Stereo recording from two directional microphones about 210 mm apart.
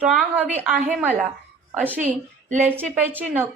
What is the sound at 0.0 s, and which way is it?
A woman's voice, 5° right (ahead or behind).